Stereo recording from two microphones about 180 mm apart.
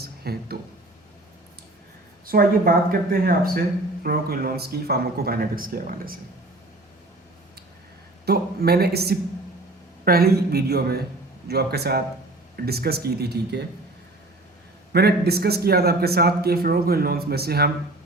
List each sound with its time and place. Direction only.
0.0 s a sound: 60° right (ahead or behind)
2.2 s a man's voice: 55° right (ahead or behind)
8.2 s a man's voice: 60° right (ahead or behind)
14.9 s a man's voice: 60° right (ahead or behind)